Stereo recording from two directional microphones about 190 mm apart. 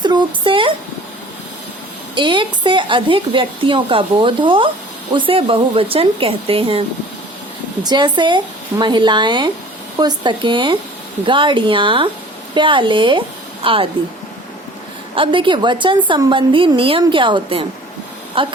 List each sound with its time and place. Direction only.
0.0 s a sound: 25° right (ahead or behind)
2.1 s speech: 25° right (ahead or behind)
7.9 s speech: 25° right (ahead or behind)
15.1 s speech: 25° right (ahead or behind)